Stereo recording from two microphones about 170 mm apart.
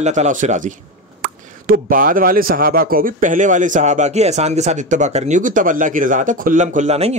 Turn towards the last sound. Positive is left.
turn(degrees=-40)  # may be behind; listen again after turning